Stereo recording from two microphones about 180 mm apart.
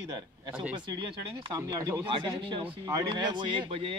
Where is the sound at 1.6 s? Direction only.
20° right (ahead or behind).